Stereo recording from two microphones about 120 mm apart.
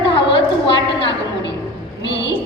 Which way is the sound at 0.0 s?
45° left (ahead or behind).